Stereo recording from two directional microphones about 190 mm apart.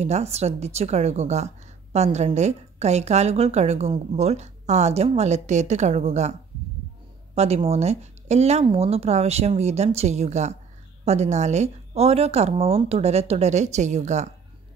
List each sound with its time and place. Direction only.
0.0 s a woman's voice: 35° right (ahead or behind)
7.3 s a woman's voice: 35° right (ahead or behind)